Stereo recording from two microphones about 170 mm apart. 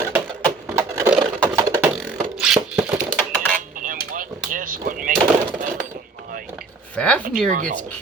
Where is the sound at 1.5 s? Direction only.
20° right (ahead or behind).